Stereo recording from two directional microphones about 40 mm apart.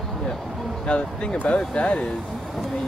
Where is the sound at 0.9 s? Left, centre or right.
Left.